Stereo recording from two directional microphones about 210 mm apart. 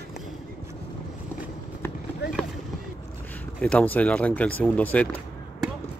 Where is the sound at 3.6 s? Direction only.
5° left (ahead or behind).